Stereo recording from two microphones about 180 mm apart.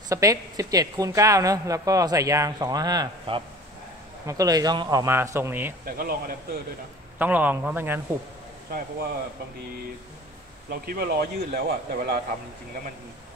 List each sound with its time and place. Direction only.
0.1 s a woman's voice: 20° right (ahead or behind)
5.9 s speech: 55° right (ahead or behind)
7.2 s speech: 10° right (ahead or behind)
10.7 s speech: 60° right (ahead or behind)